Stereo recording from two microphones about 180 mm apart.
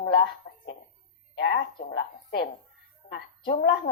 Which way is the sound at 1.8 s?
60° left (ahead or behind).